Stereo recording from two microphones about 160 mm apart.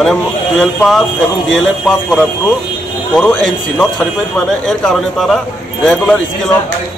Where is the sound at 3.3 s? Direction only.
Centre (ahead or behind).